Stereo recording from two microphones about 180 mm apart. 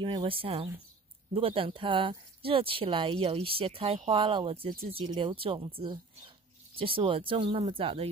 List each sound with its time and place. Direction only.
0.0 s speech: 30° right (ahead or behind)